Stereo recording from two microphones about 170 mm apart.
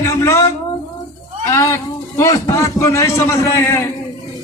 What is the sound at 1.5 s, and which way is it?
A man's voice, 15° left (ahead or behind).